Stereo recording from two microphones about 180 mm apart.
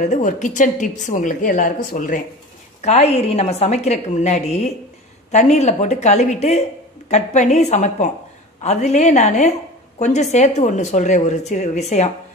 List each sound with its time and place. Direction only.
0.0 s a woman's voice: 45° left (ahead or behind)